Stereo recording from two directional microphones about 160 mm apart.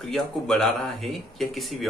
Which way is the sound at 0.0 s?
Centre (ahead or behind).